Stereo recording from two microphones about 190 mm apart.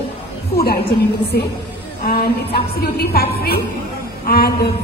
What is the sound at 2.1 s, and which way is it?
A woman's voice, 55° left (ahead or behind).